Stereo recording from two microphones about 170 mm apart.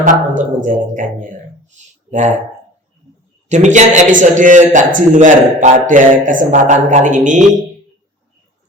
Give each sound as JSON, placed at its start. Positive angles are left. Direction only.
{"t": 0.0, "sound": "a man's voice", "side_deg": -50}
{"t": 1.7, "sound": "a sound", "side_deg": -45}
{"t": 3.5, "sound": "a man's voice", "side_deg": -45}